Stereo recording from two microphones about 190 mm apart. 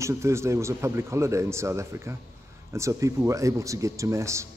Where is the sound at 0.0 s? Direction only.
15° right (ahead or behind).